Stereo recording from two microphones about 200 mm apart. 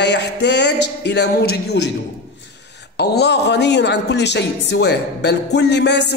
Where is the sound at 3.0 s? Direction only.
55° left (ahead or behind).